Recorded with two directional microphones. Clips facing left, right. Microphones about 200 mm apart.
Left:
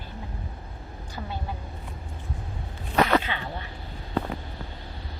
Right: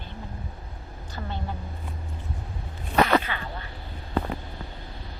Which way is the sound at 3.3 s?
20° left (ahead or behind).